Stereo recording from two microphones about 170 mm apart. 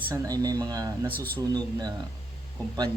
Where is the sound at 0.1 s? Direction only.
20° right (ahead or behind).